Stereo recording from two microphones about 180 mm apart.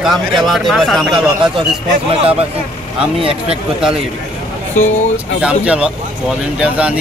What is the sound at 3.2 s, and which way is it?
Speech, 30° right (ahead or behind).